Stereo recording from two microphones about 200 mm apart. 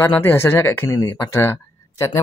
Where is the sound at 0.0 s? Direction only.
10° left (ahead or behind).